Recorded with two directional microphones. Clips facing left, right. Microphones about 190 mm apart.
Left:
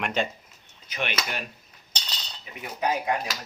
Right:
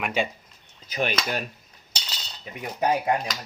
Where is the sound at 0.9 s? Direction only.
35° right (ahead or behind).